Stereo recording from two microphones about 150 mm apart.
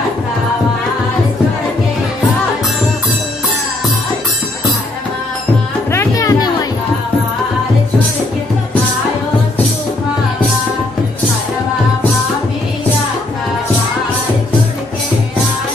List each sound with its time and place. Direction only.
5.9 s music: 20° left (ahead or behind)